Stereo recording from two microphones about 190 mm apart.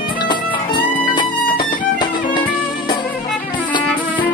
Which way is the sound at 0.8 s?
25° left (ahead or behind).